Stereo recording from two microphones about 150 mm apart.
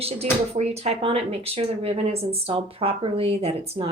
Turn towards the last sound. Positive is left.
turn(degrees=-45)  # may be behind; listen again after turning